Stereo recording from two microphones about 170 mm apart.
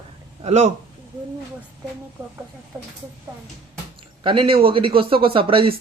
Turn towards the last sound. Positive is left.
turn(degrees=-30)  # may be behind; listen again after turning